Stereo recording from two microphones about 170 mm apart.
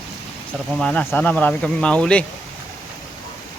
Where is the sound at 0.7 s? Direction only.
5° left (ahead or behind).